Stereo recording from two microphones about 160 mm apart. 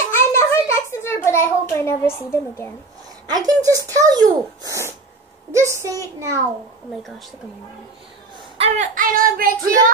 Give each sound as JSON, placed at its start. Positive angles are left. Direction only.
{"t": 0.1, "sound": "a sound", "side_deg": 15}
{"t": 0.7, "sound": "a child's voice", "side_deg": 15}
{"t": 3.3, "sound": "a child's voice", "side_deg": -25}
{"t": 6.9, "sound": "a woman's voice", "side_deg": 0}
{"t": 8.5, "sound": "child singing", "side_deg": -40}
{"t": 8.9, "sound": "child singing", "side_deg": -60}